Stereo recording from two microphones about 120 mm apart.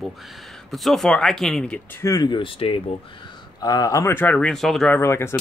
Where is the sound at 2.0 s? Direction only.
30° left (ahead or behind); by 3.3 s 50° left (ahead or behind).